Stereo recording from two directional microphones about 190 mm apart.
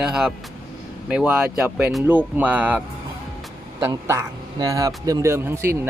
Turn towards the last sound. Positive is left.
turn(degrees=-15)  # may be behind; listen again after turning